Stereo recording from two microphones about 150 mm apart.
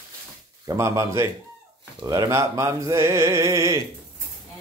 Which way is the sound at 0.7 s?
20° right (ahead or behind).